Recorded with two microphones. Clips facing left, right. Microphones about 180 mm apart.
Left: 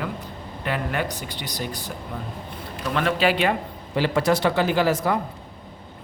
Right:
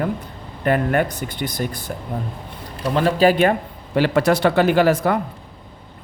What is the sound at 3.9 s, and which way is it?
Speech, 65° right (ahead or behind).